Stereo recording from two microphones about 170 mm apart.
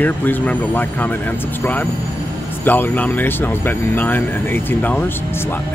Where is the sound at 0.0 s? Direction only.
10° left (ahead or behind).